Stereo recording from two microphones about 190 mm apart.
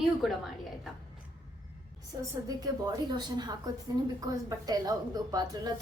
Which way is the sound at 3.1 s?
20° right (ahead or behind).